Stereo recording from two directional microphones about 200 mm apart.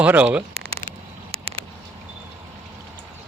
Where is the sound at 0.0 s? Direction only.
5° right (ahead or behind).